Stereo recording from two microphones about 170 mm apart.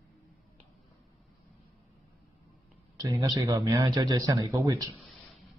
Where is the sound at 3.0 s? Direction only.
20° right (ahead or behind).